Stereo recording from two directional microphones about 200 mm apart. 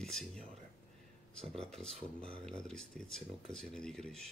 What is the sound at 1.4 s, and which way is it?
Speech, 5° left (ahead or behind).